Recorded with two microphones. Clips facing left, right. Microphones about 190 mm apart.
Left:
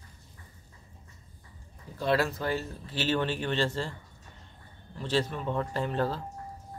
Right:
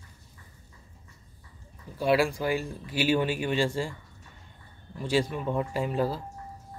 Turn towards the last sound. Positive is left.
turn(degrees=-10)  # may be behind; listen again after turning